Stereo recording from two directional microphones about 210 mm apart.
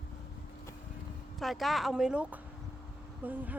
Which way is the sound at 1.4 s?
Centre (ahead or behind).